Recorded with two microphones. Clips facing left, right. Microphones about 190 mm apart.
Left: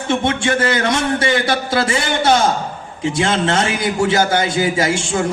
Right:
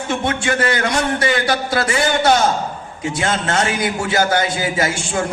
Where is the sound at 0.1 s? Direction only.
25° left (ahead or behind).